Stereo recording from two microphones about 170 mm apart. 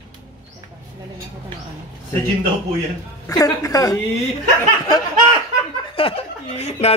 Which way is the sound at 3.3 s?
20° left (ahead or behind).